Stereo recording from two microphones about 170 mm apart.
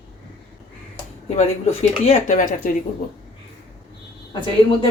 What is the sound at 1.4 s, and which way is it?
Speech, 40° left (ahead or behind).